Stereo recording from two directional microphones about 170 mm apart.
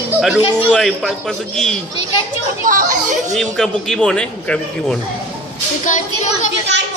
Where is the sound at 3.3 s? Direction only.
5° left (ahead or behind).